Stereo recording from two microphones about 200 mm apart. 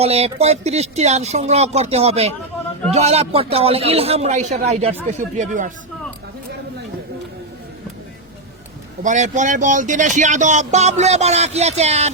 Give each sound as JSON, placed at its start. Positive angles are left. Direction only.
{"t": 0.0, "sound": "speech", "side_deg": -30}
{"t": 9.0, "sound": "speech", "side_deg": -40}